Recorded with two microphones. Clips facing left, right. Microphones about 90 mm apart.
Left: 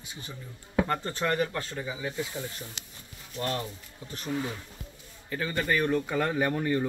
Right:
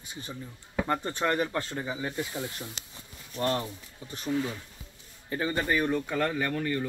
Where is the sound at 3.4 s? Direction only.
30° right (ahead or behind).